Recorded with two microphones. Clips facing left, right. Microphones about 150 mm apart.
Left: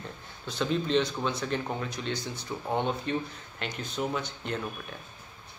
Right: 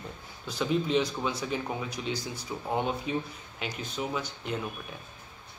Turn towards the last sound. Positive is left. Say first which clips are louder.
# even
turn(degrees=-5)  # may be behind; listen again after turning